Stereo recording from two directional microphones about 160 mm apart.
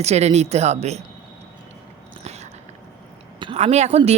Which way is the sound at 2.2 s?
45° right (ahead or behind).